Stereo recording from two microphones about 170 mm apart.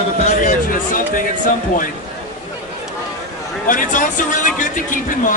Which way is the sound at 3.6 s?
50° left (ahead or behind).